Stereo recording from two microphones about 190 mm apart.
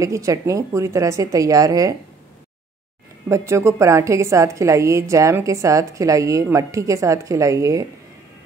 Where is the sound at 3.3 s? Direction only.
15° right (ahead or behind).